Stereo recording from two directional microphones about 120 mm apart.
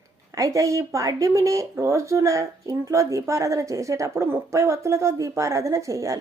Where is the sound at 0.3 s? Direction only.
25° right (ahead or behind).